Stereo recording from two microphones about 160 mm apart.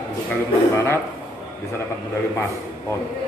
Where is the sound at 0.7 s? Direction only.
15° left (ahead or behind).